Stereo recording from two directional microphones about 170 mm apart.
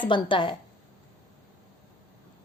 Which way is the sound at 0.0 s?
30° left (ahead or behind).